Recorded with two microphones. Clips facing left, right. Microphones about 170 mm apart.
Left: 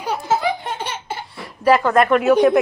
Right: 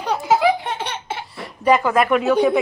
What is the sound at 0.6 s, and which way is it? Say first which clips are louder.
Laughter: even; centre (ahead or behind).